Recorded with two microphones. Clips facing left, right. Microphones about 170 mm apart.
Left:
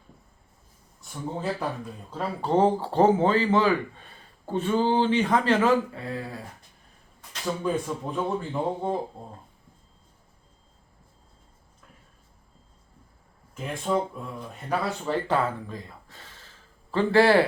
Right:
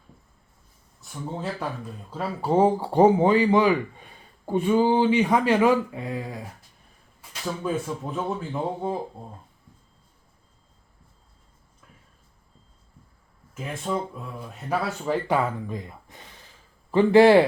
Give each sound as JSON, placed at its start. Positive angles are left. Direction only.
{"t": 1.0, "sound": "speech", "side_deg": 0}
{"t": 7.2, "sound": "speech", "side_deg": 0}
{"t": 13.5, "sound": "a man's voice", "side_deg": -5}